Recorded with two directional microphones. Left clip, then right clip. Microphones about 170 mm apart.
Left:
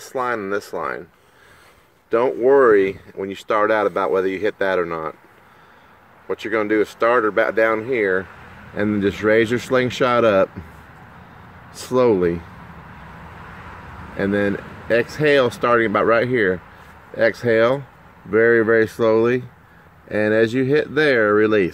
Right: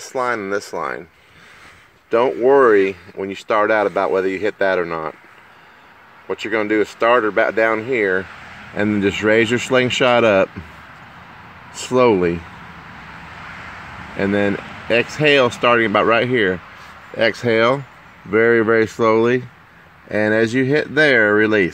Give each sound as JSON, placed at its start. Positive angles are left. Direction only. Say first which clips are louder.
{"t": 0.0, "sound": "speech", "louder": "right 2 dB", "side_deg": -40}
{"t": 2.0, "sound": "speech", "louder": "right 2 dB", "side_deg": -45}
{"t": 6.2, "sound": "speech", "louder": "right 1 dB", "side_deg": -45}
{"t": 11.8, "sound": "speech", "louder": "right 2 dB", "side_deg": -40}
{"t": 14.1, "sound": "speech", "louder": "right 2 dB", "side_deg": -45}